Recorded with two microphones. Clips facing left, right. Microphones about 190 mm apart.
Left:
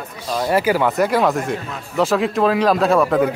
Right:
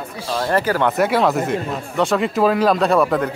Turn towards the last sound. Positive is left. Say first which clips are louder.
# left 1 dB
turn(degrees=0)  # may be behind; listen again after turning